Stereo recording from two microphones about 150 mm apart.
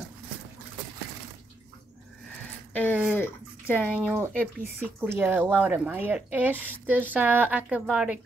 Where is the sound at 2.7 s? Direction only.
10° left (ahead or behind).